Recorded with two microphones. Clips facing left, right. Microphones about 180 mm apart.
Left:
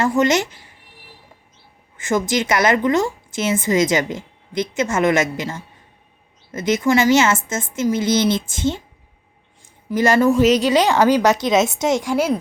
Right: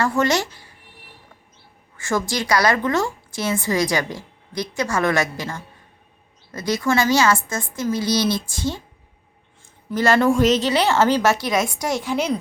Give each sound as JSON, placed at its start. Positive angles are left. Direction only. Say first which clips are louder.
{"t": 0.0, "sound": "a woman's voice", "louder": "left 3 dB", "side_deg": 20}
{"t": 2.0, "sound": "a woman's voice", "louder": "left 4 dB", "side_deg": 20}
{"t": 9.9, "sound": "a woman's voice", "louder": "left 2 dB", "side_deg": 15}